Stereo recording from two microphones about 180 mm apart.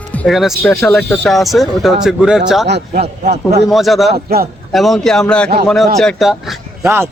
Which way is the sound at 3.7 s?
Centre (ahead or behind).